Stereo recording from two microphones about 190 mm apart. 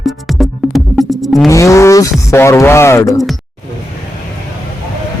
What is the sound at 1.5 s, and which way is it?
Speech, 15° left (ahead or behind).